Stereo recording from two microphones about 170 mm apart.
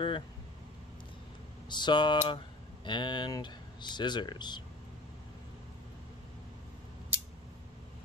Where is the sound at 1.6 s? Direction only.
25° left (ahead or behind).